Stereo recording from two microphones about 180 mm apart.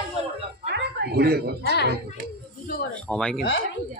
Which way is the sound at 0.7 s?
65° right (ahead or behind).